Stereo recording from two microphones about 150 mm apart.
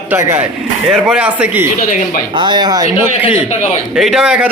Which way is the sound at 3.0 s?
10° right (ahead or behind).